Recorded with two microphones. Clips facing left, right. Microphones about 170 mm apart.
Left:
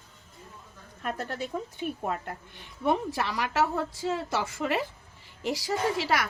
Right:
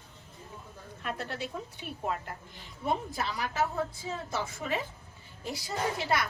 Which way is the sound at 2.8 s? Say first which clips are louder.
Left 5 dB; 75° left (ahead or behind).